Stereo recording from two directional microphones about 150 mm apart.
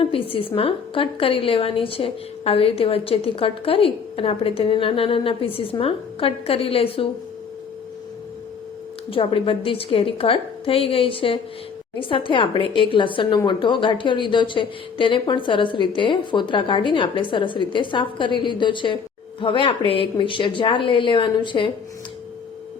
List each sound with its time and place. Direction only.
0.0 s speech: 40° left (ahead or behind)
9.0 s speech: 35° left (ahead or behind)